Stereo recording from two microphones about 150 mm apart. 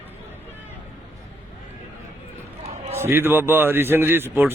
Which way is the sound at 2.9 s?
15° right (ahead or behind).